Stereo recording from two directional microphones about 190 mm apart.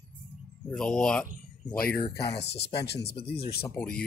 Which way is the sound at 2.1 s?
60° left (ahead or behind).